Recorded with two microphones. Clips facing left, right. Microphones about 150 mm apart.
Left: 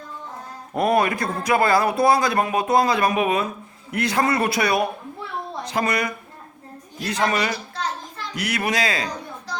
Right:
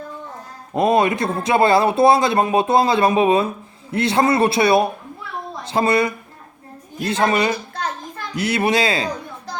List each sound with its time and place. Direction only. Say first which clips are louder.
0.7 s speech: right 3 dB; 20° right (ahead or behind)